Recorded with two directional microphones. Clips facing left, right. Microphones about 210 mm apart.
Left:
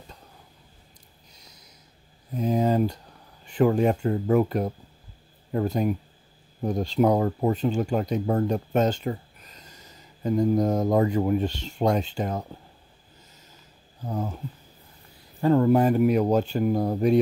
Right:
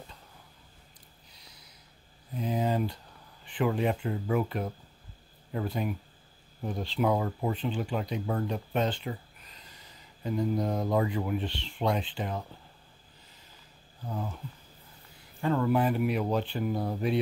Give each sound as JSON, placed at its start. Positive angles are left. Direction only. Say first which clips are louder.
{"t": 1.3, "sound": "a sound", "louder": "left 5 dB", "side_deg": 45}
{"t": 3.4, "sound": "speech", "louder": "left 7 dB", "side_deg": 45}
{"t": 14.0, "sound": "speech", "louder": "left 6 dB", "side_deg": 40}
{"t": 15.4, "sound": "speech", "louder": "left 7 dB", "side_deg": 40}